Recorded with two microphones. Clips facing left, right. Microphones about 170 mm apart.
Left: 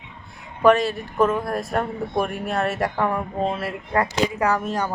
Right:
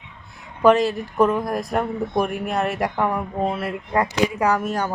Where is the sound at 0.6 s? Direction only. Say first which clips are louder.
Right 1 dB; 20° right (ahead or behind).